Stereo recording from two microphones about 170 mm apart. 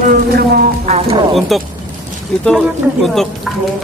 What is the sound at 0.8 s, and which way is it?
Speech, 35° right (ahead or behind).